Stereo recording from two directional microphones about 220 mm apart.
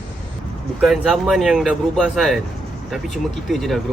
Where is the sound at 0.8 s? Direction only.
Centre (ahead or behind).